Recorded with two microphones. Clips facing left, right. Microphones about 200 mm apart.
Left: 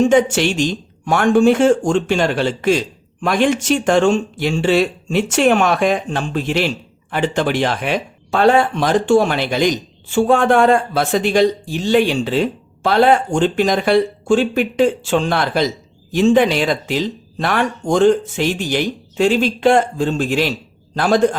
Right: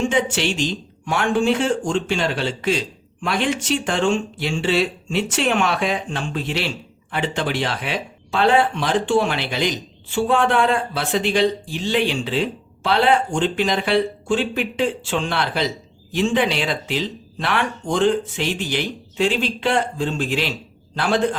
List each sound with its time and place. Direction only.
0.0 s speech: 45° left (ahead or behind)